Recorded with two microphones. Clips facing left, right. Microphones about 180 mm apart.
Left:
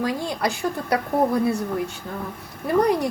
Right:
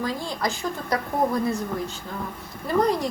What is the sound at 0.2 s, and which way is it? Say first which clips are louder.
Speech: left 3 dB; 65° left (ahead or behind).